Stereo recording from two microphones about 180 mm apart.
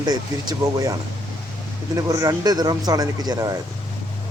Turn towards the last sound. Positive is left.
turn(degrees=-20)  # may be behind; listen again after turning